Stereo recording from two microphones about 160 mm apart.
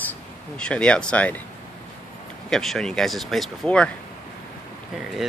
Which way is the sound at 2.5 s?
5° left (ahead or behind).